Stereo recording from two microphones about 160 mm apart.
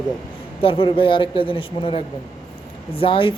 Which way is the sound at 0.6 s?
35° left (ahead or behind).